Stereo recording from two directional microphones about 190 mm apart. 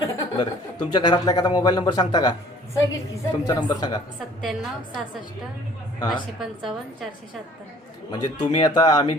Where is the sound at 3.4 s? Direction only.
20° left (ahead or behind).